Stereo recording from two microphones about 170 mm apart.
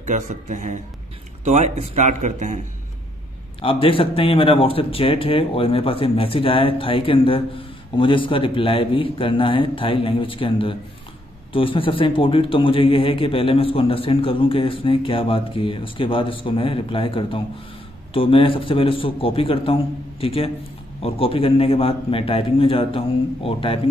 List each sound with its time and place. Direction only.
0.0 s speech: 45° right (ahead or behind)
3.6 s speech: 30° left (ahead or behind)